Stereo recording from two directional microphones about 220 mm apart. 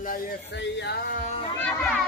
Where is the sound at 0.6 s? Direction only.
50° left (ahead or behind).